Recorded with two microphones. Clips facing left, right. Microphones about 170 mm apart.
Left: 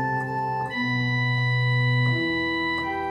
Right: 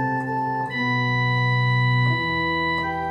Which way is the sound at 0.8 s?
55° right (ahead or behind).